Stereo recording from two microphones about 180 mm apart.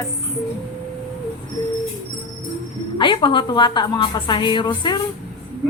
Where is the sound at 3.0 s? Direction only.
25° left (ahead or behind).